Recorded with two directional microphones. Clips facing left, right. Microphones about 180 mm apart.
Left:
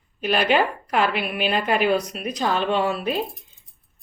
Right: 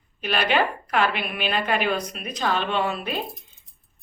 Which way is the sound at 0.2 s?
40° left (ahead or behind).